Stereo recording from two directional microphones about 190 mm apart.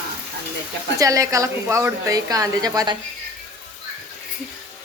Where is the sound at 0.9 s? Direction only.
15° right (ahead or behind).